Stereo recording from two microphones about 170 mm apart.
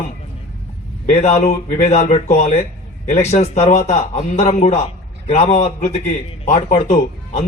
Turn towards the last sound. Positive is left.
turn(degrees=40)  # may be behind; listen again after turning